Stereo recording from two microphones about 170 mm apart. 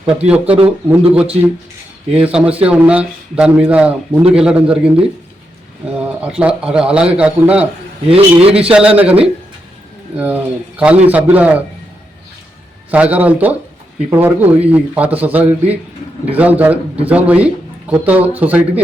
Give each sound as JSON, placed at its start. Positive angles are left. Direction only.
{"t": 0.3, "sound": "a man's voice", "side_deg": -10}
{"t": 5.8, "sound": "a sound", "side_deg": -5}
{"t": 6.4, "sound": "speech", "side_deg": -5}
{"t": 8.1, "sound": "a man's voice", "side_deg": -35}
{"t": 8.7, "sound": "speech", "side_deg": -5}
{"t": 10.2, "sound": "speech", "side_deg": -10}
{"t": 12.9, "sound": "speech", "side_deg": -10}